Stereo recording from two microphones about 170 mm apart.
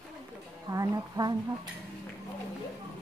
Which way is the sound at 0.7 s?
20° right (ahead or behind).